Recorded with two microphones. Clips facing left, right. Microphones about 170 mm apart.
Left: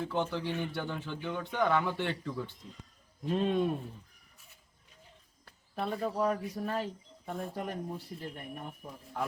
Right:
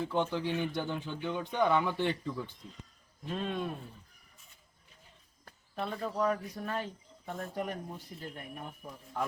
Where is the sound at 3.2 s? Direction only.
15° left (ahead or behind).